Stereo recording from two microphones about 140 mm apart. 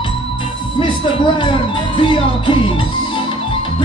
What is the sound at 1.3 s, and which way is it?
Music, 35° left (ahead or behind).